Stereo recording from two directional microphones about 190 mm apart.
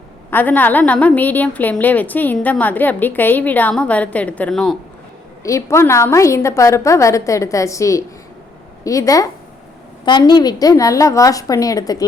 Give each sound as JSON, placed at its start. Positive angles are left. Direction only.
{"t": 0.3, "sound": "a woman's voice", "side_deg": 10}
{"t": 5.4, "sound": "a woman's voice", "side_deg": 15}